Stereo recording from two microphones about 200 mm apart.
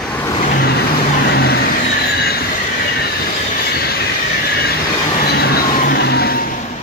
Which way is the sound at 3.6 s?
50° left (ahead or behind).